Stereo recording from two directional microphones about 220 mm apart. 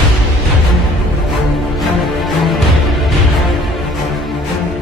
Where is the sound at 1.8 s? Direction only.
Centre (ahead or behind).